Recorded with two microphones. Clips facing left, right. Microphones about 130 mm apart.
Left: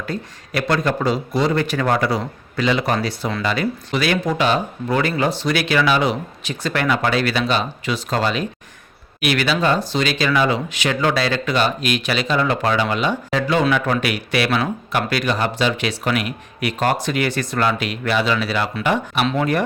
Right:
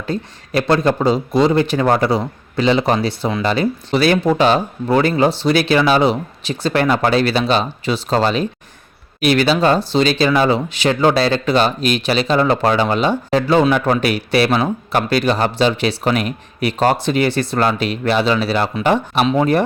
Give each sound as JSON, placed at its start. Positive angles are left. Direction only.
{"t": 0.0, "sound": "speech", "side_deg": -25}
{"t": 19.2, "sound": "speech", "side_deg": -20}